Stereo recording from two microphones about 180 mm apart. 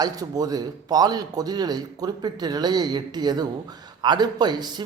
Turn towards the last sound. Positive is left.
turn(degrees=-25)  # may be behind; listen again after turning